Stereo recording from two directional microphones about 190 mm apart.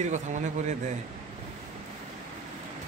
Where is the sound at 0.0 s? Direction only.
40° right (ahead or behind).